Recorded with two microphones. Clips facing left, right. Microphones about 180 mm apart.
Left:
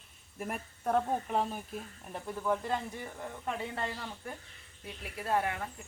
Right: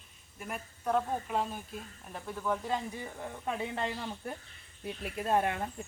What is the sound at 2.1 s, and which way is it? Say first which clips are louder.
Speech: left 1 dB; 5° left (ahead or behind).